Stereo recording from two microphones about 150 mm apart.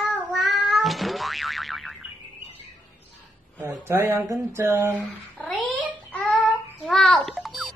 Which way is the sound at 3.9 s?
15° right (ahead or behind).